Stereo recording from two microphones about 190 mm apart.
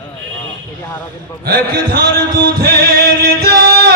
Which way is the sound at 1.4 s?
50° right (ahead or behind).